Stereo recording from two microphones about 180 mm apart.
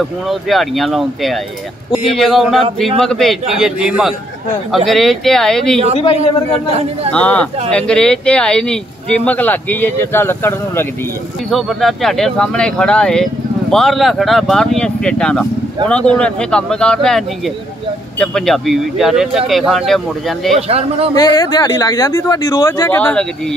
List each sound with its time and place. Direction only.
0.3 s speech: centre (ahead or behind)
7.1 s speech: 5° left (ahead or behind)
11.5 s speech: centre (ahead or behind)
18.2 s speech: 5° left (ahead or behind)
20.5 s a man's voice: 35° right (ahead or behind)
21.1 s speech: 20° left (ahead or behind)